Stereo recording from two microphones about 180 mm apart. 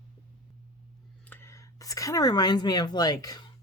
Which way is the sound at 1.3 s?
15° left (ahead or behind).